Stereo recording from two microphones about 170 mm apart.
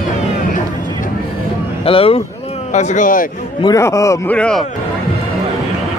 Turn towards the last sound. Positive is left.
turn(degrees=5)  # may be behind; listen again after turning